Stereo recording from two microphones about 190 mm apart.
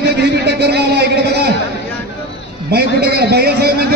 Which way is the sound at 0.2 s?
60° right (ahead or behind).